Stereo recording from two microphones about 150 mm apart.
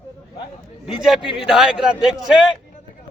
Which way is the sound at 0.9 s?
5° right (ahead or behind).